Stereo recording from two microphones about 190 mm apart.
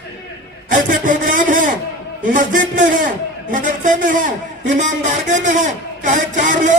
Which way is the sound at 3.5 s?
45° right (ahead or behind).